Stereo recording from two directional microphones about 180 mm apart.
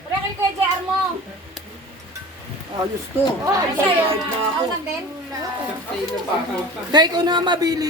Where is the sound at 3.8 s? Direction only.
30° right (ahead or behind).